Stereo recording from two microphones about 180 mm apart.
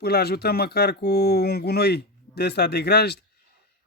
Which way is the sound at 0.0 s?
60° left (ahead or behind).